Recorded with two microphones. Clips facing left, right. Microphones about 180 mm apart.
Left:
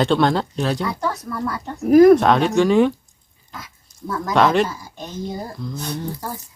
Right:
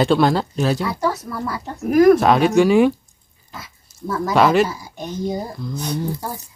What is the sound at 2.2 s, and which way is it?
Speech, 5° right (ahead or behind).